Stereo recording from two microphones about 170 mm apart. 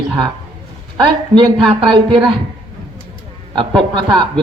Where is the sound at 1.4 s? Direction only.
30° right (ahead or behind).